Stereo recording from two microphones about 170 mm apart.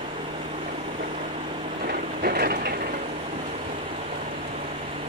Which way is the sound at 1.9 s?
60° right (ahead or behind).